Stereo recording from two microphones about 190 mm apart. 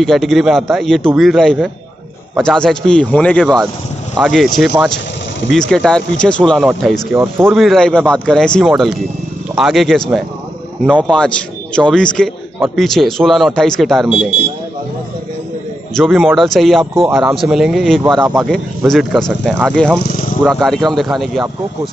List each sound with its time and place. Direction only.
0.0 s speech: centre (ahead or behind)
5.5 s speech: 5° left (ahead or behind)
7.2 s speech: 10° right (ahead or behind)
7.5 s speech: centre (ahead or behind)
15.9 s speech: centre (ahead or behind)